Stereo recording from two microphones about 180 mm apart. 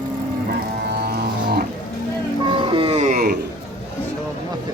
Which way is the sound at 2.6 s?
25° right (ahead or behind).